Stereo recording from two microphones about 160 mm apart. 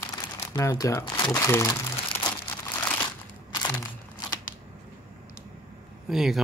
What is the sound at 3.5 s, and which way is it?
Crumpling, 25° left (ahead or behind).